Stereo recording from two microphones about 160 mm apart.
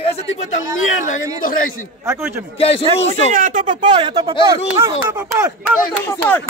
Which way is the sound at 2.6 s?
35° left (ahead or behind).